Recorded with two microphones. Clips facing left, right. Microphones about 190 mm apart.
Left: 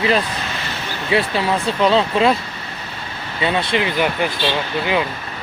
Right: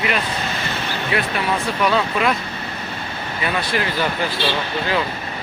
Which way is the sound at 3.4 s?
25° left (ahead or behind).